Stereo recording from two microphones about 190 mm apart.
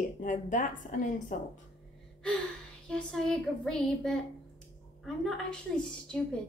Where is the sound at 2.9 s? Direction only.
5° left (ahead or behind).